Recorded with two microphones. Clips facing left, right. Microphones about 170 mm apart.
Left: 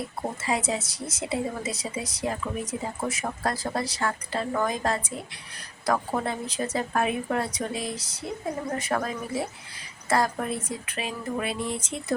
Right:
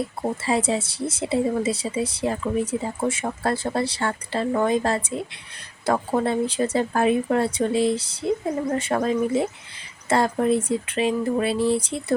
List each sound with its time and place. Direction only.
0.4 s a woman's voice: 30° right (ahead or behind)